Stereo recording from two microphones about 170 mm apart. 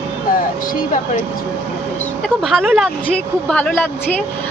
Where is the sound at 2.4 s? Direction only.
Centre (ahead or behind).